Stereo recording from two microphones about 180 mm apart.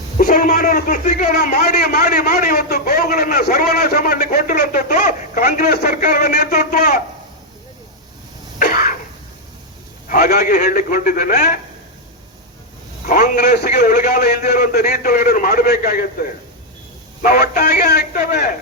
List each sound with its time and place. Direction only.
0.2 s a man's voice: 55° left (ahead or behind)
3.4 s a man's voice: 60° left (ahead or behind)
5.8 s a man's voice: 45° left (ahead or behind)
8.5 s cough: 45° left (ahead or behind)
10.1 s a man's voice: 55° left (ahead or behind)
13.1 s a man's voice: 45° left (ahead or behind)
17.2 s a man's voice: 50° left (ahead or behind)
17.8 s a man's voice: 55° left (ahead or behind)